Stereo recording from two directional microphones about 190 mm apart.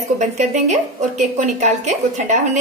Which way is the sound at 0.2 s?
40° right (ahead or behind).